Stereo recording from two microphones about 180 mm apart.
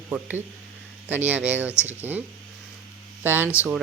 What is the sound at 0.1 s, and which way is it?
Speech, 10° right (ahead or behind).